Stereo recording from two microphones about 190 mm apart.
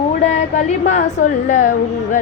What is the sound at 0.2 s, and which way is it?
A woman's voice, 35° left (ahead or behind).